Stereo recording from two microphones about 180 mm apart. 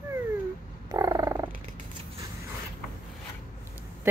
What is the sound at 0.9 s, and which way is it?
Frog, 20° right (ahead or behind).